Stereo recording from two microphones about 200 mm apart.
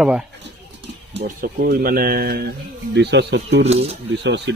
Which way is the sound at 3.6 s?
30° right (ahead or behind).